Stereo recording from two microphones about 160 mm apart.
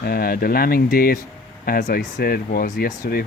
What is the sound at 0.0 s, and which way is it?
Speech, 70° left (ahead or behind).